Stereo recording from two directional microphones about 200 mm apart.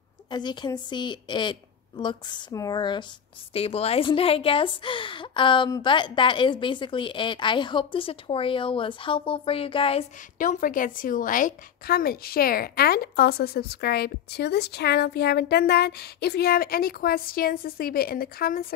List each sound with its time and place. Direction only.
0.3 s a woman's voice: 20° left (ahead or behind)
10.4 s a woman's voice: 40° left (ahead or behind)